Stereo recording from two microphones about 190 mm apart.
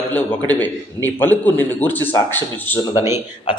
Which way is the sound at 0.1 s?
10° left (ahead or behind).